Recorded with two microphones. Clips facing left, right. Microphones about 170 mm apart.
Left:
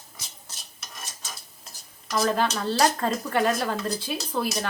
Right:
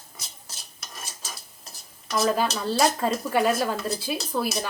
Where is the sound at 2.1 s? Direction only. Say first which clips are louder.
Even; 5° right (ahead or behind).